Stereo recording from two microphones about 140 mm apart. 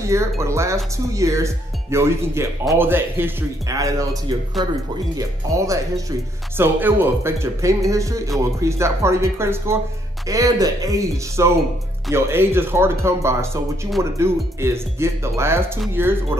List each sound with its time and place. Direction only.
0.0 s speech: 20° right (ahead or behind)
5.1 s speech: 20° right (ahead or behind)